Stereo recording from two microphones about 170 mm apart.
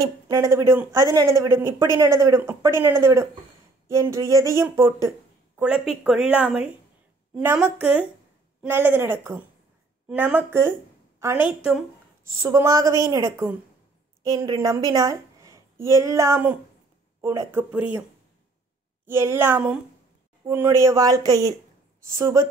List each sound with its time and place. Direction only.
0.0 s speech: 20° right (ahead or behind)
12.4 s a woman's voice: 15° right (ahead or behind)
19.0 s speech: 15° right (ahead or behind)